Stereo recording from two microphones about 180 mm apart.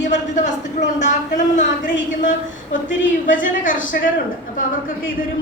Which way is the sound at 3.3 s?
50° left (ahead or behind).